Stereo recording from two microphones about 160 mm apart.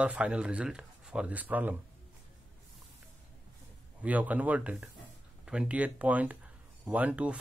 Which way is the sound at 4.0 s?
10° right (ahead or behind).